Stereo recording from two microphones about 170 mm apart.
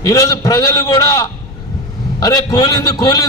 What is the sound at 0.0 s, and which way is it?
A man's voice, 20° left (ahead or behind).